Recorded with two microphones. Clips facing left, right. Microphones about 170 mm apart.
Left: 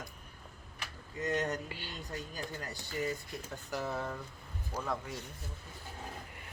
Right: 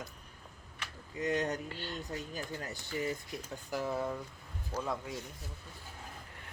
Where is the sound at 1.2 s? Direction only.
15° right (ahead or behind).